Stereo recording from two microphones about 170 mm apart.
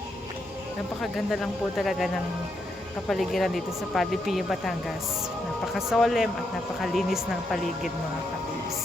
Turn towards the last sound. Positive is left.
turn(degrees=0)  # may be behind; listen again after turning